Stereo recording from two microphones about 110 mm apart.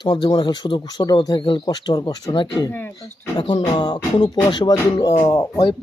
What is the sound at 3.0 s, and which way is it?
Speech, 40° left (ahead or behind).